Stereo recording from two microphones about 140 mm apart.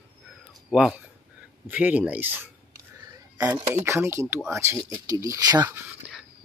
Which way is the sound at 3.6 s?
45° right (ahead or behind).